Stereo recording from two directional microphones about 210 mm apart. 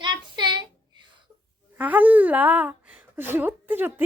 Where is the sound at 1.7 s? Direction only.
10° right (ahead or behind).